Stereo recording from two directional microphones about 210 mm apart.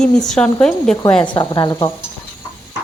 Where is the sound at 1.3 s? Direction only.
20° left (ahead or behind).